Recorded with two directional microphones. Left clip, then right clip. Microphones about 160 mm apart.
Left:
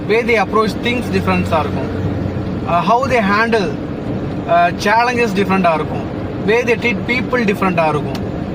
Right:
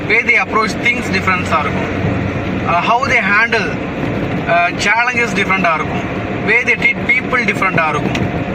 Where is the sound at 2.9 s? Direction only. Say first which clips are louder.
Right 1 dB; 25° left (ahead or behind).